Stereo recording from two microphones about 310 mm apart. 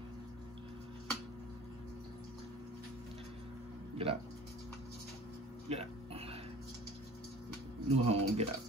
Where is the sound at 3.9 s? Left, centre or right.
Centre.